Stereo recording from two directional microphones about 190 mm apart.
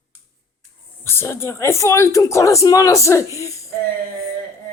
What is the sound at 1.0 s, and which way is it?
Speech, 15° left (ahead or behind).